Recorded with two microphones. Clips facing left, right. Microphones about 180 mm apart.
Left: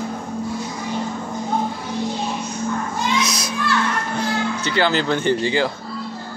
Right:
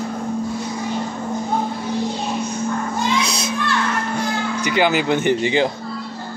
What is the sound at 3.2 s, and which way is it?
Children playing, 30° right (ahead or behind).